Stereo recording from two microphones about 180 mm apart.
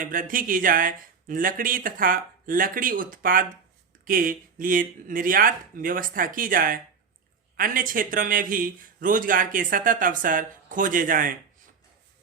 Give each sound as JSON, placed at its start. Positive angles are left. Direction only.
{"t": 0.0, "sound": "a man's voice", "side_deg": -50}